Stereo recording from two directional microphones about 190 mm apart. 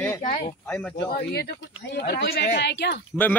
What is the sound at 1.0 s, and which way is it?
Speech, 55° left (ahead or behind).